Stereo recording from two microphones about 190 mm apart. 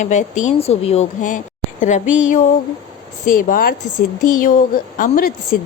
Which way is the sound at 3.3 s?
45° left (ahead or behind).